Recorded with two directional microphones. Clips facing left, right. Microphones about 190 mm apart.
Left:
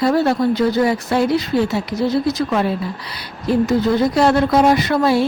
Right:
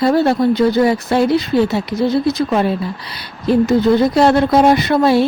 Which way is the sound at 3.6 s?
65° right (ahead or behind).